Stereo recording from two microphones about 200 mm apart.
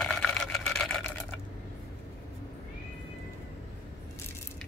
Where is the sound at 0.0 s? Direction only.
5° left (ahead or behind).